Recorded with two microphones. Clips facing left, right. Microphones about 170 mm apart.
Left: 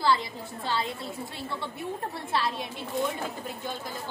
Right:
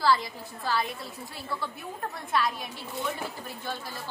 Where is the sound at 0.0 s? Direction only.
25° left (ahead or behind).